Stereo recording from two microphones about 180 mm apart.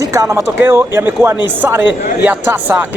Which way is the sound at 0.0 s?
20° right (ahead or behind).